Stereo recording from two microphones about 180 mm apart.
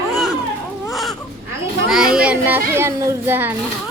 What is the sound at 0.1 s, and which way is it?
Baby cry, centre (ahead or behind).